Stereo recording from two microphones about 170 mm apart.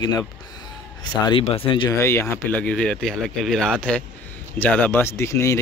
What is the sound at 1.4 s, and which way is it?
Speech, 35° left (ahead or behind).